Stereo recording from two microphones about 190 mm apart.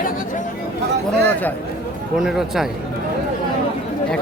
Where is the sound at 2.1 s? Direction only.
Centre (ahead or behind).